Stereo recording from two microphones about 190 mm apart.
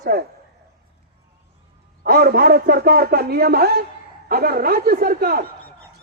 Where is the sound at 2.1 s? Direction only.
55° right (ahead or behind).